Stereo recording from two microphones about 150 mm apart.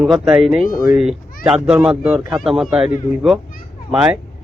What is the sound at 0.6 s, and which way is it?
Speech, 70° left (ahead or behind).